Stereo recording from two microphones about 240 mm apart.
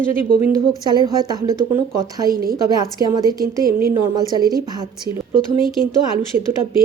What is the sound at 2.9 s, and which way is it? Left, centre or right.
A woman's voice, centre.